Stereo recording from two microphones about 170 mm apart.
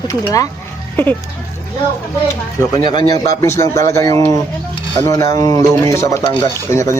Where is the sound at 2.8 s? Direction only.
25° left (ahead or behind).